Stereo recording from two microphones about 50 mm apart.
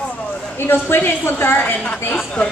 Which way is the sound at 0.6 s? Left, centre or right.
Left.